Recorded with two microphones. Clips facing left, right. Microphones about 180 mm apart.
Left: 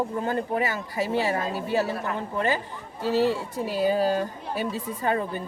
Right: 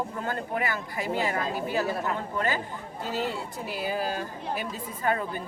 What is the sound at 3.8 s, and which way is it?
Speech, 30° left (ahead or behind).